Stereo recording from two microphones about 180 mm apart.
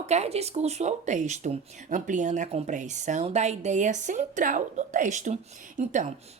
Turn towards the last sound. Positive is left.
turn(degrees=-40)  # may be behind; listen again after turning